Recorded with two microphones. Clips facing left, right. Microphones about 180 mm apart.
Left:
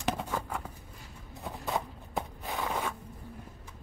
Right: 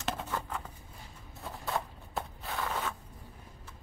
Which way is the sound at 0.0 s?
10° left (ahead or behind).